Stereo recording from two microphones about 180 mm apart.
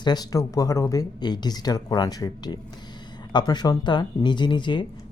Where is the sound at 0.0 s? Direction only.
20° left (ahead or behind).